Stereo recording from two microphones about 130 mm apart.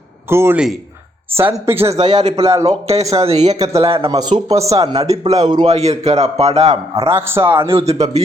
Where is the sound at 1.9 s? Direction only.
30° right (ahead or behind).